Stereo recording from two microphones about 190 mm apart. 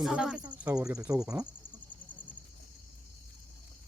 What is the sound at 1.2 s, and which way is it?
Insect, 5° right (ahead or behind).